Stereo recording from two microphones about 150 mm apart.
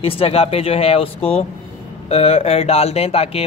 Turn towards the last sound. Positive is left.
turn(degrees=40)  # may be behind; listen again after turning